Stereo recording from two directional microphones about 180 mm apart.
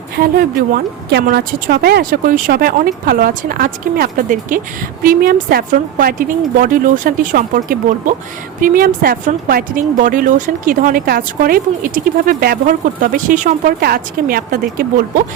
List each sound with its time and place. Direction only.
0.2 s a woman's voice: 55° right (ahead or behind)